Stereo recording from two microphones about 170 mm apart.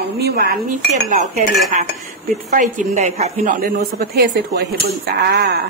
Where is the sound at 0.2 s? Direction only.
65° right (ahead or behind).